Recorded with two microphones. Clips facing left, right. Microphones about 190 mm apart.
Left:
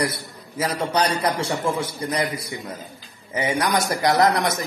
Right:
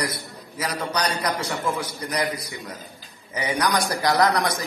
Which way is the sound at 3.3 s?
25° left (ahead or behind).